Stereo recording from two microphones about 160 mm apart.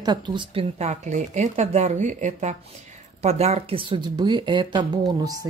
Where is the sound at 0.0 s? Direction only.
30° right (ahead or behind).